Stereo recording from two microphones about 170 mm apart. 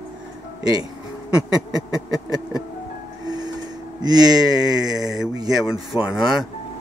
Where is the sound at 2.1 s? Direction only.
20° right (ahead or behind).